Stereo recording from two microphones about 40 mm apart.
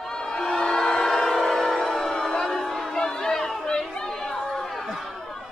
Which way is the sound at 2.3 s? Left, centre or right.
Centre.